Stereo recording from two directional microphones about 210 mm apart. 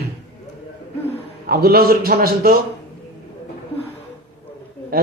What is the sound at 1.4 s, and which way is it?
A man's voice, 45° right (ahead or behind).